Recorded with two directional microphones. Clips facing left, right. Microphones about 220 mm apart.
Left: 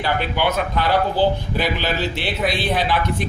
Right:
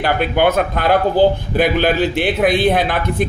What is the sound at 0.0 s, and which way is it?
Speech, 55° right (ahead or behind).